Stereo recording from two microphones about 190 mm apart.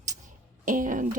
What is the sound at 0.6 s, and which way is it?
Speech, 45° right (ahead or behind).